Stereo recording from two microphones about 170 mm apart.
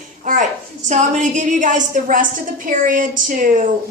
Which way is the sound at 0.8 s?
45° right (ahead or behind).